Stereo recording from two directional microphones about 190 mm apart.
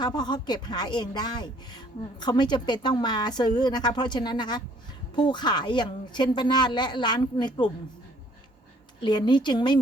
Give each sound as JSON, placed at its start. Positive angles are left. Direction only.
{"t": 0.0, "sound": "a woman's voice", "side_deg": 20}
{"t": 9.0, "sound": "a woman's voice", "side_deg": 25}